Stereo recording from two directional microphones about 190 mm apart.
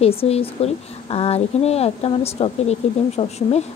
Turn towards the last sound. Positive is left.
turn(degrees=35)  # may be behind; listen again after turning